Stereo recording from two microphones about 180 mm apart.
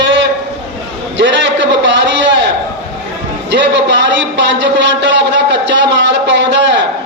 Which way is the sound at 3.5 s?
80° right.